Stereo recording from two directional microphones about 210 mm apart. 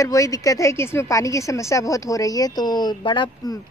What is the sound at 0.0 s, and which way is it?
Speech, 15° left (ahead or behind).